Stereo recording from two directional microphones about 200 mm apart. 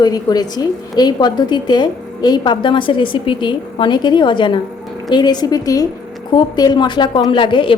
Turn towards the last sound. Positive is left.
turn(degrees=25)  # may be behind; listen again after turning